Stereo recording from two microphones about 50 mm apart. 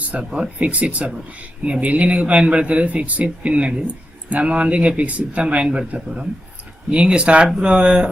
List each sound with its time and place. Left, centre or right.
0.0 s a sound: right
0.3 s speech: right
6.9 s speech: right